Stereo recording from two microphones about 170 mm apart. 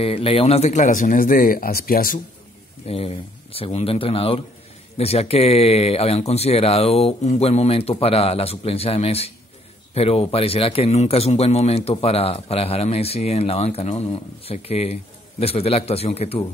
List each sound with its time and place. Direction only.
0.0 s speech: 35° left (ahead or behind); by 2.2 s 55° left (ahead or behind)
2.9 s speech: 35° left (ahead or behind)